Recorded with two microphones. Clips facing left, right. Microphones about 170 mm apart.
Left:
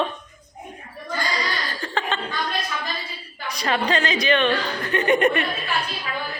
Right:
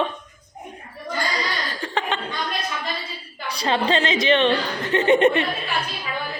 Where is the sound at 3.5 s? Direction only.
30° right (ahead or behind).